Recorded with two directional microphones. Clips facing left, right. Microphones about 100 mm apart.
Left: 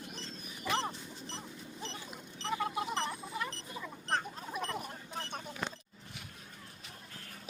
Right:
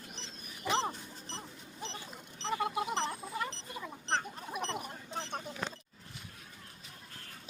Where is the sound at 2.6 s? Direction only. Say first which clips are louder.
Right 2 dB; 15° right (ahead or behind).